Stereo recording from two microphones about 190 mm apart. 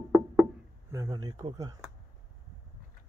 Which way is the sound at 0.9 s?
20° right (ahead or behind).